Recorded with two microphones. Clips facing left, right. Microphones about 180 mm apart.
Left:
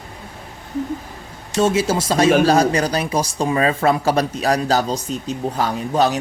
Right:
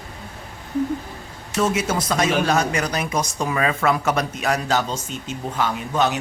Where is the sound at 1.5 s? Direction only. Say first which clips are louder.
Left 4 dB; 30° left (ahead or behind).